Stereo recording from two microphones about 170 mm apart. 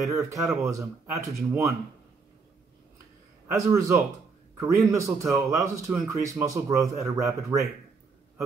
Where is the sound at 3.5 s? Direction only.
20° right (ahead or behind).